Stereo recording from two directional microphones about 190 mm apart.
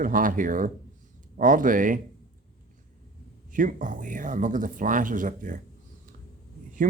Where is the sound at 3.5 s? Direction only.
45° right (ahead or behind).